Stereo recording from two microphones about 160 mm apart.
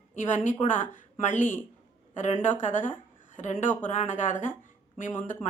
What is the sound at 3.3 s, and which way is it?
A woman's voice, 50° left (ahead or behind).